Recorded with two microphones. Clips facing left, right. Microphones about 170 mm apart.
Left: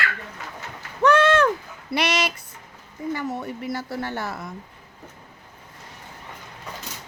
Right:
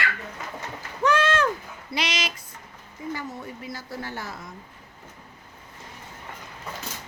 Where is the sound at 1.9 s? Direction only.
65° left (ahead or behind).